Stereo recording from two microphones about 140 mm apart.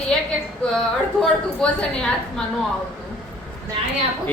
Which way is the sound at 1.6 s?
5° left (ahead or behind).